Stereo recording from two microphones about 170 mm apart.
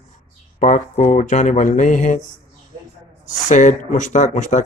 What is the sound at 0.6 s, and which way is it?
Speech, 45° left (ahead or behind).